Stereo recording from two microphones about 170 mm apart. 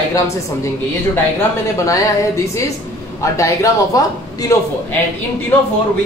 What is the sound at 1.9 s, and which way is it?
Speech, 20° left (ahead or behind).